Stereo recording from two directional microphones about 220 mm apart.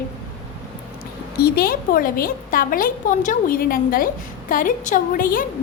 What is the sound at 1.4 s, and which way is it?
A woman's voice, 45° left (ahead or behind).